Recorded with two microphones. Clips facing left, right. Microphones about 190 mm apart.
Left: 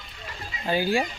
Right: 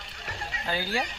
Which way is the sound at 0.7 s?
15° left (ahead or behind).